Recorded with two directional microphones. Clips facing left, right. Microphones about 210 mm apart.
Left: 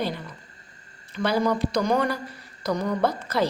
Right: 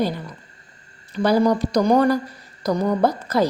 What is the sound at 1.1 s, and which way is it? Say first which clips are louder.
A woman's voice: right 6 dB; 40° right (ahead or behind).